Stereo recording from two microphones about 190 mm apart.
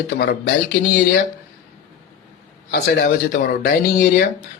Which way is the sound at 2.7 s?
55° left (ahead or behind).